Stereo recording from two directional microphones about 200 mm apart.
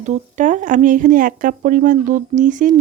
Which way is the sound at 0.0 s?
35° right (ahead or behind).